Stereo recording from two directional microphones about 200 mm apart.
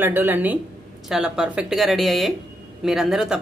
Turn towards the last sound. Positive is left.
turn(degrees=0)  # may be behind; listen again after turning